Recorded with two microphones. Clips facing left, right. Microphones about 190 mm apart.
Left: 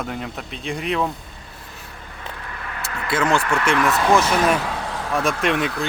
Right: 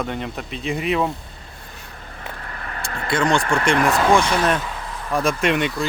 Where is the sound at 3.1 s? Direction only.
5° left (ahead or behind).